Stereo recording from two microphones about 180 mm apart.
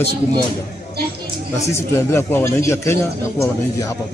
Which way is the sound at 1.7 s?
15° left (ahead or behind).